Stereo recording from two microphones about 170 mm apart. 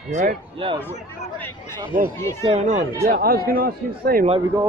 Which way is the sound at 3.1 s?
60° right (ahead or behind).